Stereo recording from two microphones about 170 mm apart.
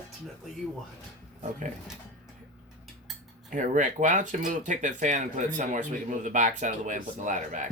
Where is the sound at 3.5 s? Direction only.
50° right (ahead or behind).